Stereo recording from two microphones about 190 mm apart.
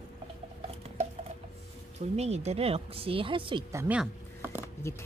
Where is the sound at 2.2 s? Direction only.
35° right (ahead or behind); by 3.9 s 15° right (ahead or behind).